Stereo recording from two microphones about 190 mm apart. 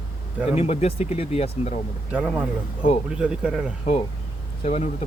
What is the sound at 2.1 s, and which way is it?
A man's voice, 10° right (ahead or behind).